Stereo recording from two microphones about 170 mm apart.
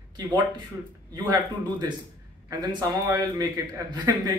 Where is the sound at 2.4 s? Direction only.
20° right (ahead or behind).